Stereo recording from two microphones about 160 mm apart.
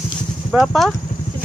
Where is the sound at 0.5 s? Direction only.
Centre (ahead or behind).